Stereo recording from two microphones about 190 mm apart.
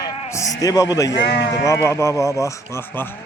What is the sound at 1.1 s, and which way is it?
Speech, 65° left (ahead or behind).